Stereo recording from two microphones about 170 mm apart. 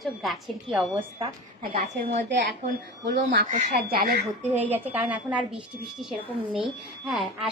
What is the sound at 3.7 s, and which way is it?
Speech, 70° right (ahead or behind).